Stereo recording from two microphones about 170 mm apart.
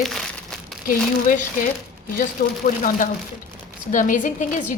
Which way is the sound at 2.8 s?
50° left (ahead or behind).